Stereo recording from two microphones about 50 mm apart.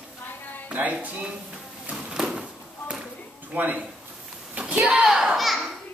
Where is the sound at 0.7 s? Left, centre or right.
Right.